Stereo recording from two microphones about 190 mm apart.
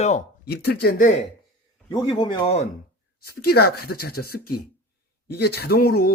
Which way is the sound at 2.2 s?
25° left (ahead or behind).